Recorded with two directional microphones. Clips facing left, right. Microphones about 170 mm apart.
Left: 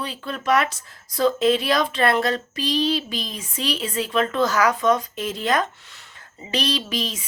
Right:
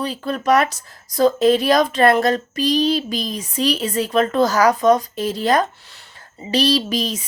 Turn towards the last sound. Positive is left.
turn(degrees=-40)  # may be behind; listen again after turning